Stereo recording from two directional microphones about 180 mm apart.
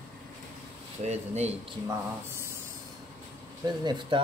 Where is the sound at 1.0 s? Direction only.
40° right (ahead or behind).